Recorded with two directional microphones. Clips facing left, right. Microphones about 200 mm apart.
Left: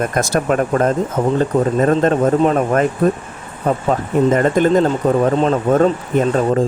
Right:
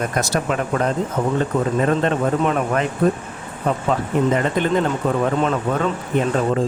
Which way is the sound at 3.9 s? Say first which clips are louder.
Left 4 dB; 45° left (ahead or behind).